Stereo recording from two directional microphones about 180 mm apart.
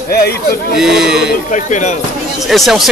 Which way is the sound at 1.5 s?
40° left (ahead or behind).